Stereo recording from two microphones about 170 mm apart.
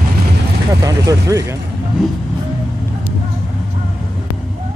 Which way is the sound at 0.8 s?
20° right (ahead or behind).